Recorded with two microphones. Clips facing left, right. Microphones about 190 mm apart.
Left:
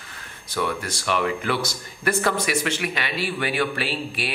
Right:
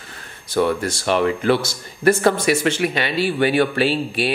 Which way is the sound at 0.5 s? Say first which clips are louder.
Right 8 dB; 30° right (ahead or behind).